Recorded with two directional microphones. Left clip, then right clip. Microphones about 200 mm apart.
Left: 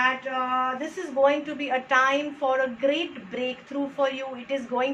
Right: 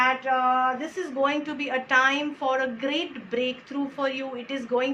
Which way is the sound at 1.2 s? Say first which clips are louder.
Left 4 dB; 50° right (ahead or behind).